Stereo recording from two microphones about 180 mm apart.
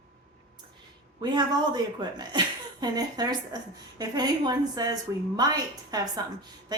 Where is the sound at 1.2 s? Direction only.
25° right (ahead or behind).